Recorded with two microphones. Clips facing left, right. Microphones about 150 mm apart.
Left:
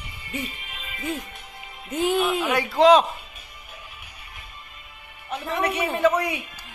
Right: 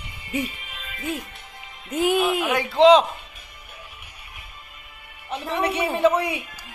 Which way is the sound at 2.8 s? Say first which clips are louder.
Right 2 dB; 20° right (ahead or behind).